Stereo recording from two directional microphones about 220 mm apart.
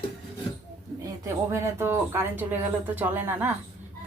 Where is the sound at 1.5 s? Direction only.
10° right (ahead or behind).